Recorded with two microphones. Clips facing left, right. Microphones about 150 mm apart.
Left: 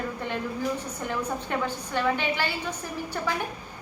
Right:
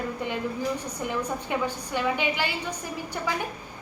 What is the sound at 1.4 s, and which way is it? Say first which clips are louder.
A woman's voice: right 1 dB; 15° right (ahead or behind).